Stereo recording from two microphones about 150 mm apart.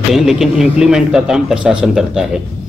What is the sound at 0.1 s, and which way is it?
Speech, 5° right (ahead or behind).